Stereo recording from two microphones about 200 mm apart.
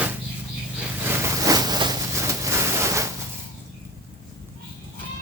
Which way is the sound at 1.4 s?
20° right (ahead or behind).